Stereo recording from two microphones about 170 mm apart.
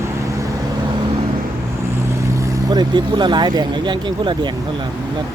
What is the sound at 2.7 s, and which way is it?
Speech, 25° right (ahead or behind).